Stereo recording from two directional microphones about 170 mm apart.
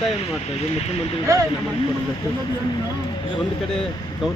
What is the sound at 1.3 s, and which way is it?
Speech, 20° right (ahead or behind).